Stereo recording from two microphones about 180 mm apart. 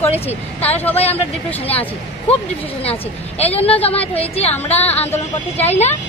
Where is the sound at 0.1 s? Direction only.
35° left (ahead or behind).